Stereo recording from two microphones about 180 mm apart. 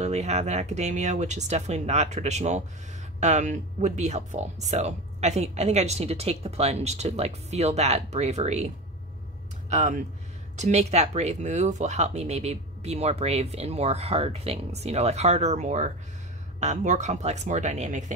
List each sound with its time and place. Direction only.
0.0 s speech: 35° right (ahead or behind)
9.7 s speech: 40° right (ahead or behind)